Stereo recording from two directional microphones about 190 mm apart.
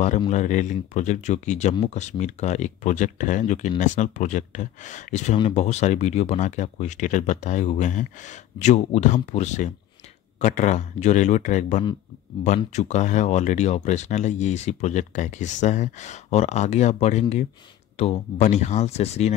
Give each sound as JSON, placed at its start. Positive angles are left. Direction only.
{"t": 0.3, "sound": "speech", "side_deg": 40}